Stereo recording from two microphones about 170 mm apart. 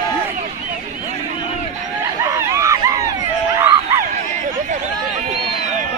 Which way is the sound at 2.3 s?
20° right (ahead or behind).